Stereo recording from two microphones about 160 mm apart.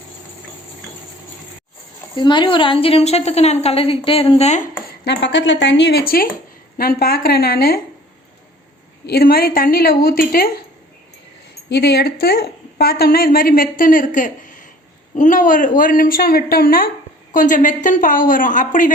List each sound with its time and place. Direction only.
2.1 s a woman's voice: 30° left (ahead or behind); by 4.7 s 45° left (ahead or behind)
5.0 s a woman's voice: 90° left; by 7.8 s 70° left (ahead or behind)
9.0 s a woman's voice: 75° left (ahead or behind)
11.7 s a woman's voice: 90° left; by 16.9 s 65° left (ahead or behind)
17.3 s a woman's voice: 55° left (ahead or behind)